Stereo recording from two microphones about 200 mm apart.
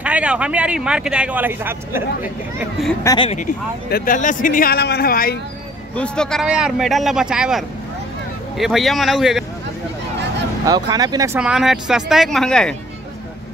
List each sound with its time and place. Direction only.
0.0 s speech: 5° right (ahead or behind)
3.0 s speech: 15° left (ahead or behind)
3.9 s speech: 45° left (ahead or behind)
5.9 s speech: 5° left (ahead or behind)
10.6 s speech: 20° right (ahead or behind)
11.3 s speech: 5° right (ahead or behind)